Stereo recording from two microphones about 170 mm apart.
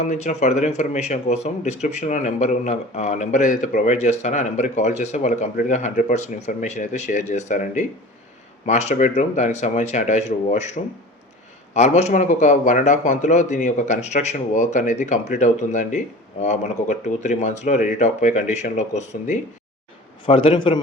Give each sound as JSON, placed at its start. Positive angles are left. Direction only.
{"t": 0.0, "sound": "speech", "side_deg": 45}
{"t": 20.2, "sound": "a man's voice", "side_deg": 30}